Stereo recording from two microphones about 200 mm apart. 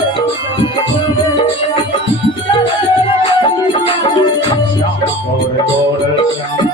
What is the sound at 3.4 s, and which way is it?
Music, 25° left (ahead or behind).